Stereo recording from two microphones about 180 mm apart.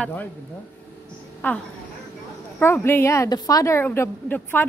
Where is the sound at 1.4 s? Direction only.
10° left (ahead or behind).